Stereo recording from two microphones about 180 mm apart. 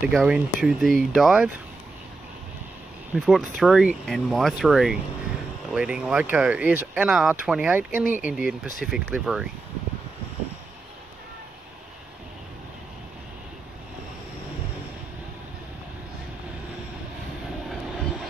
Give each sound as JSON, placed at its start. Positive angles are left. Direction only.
{"t": 0.1, "sound": "speech", "side_deg": -5}
{"t": 3.2, "sound": "speech", "side_deg": 0}